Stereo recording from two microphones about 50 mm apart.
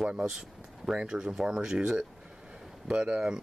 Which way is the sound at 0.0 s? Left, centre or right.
Centre.